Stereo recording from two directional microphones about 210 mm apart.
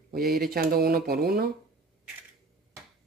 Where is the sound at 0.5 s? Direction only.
45° right (ahead or behind).